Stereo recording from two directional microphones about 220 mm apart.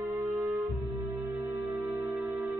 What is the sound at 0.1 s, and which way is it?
Music, centre (ahead or behind).